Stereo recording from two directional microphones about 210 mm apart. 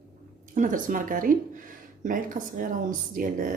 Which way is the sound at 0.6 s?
40° right (ahead or behind).